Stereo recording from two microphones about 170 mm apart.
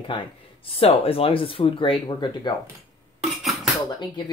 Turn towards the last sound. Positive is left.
turn(degrees=0)  # may be behind; listen again after turning